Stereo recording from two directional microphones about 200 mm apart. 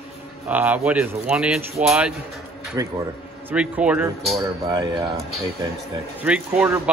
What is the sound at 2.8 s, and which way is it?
Speech, 15° right (ahead or behind).